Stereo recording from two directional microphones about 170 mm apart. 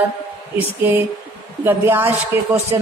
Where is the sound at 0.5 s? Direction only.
10° right (ahead or behind).